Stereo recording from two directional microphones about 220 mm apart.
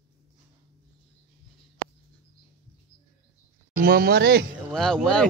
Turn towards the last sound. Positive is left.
turn(degrees=5)  # may be behind; listen again after turning